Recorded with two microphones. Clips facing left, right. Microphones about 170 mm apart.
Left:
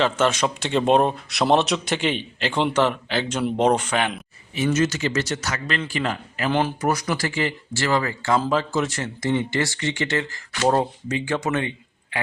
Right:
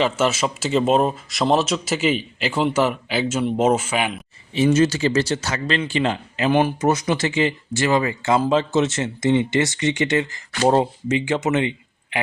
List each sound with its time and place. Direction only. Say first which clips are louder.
0.0 s speech: right 1 dB; 5° right (ahead or behind)
4.5 s speech: right 5 dB; 30° right (ahead or behind)